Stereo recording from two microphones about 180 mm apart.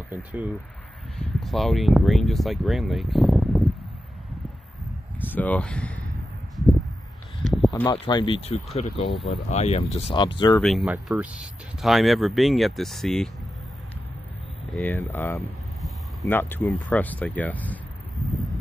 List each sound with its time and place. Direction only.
0.1 s speech: 10° right (ahead or behind)
5.2 s speech: 10° left (ahead or behind)
6.5 s a sound: centre (ahead or behind)
7.9 s speech: 25° left (ahead or behind)
10.6 s speech: centre (ahead or behind)
14.7 s speech: 10° left (ahead or behind)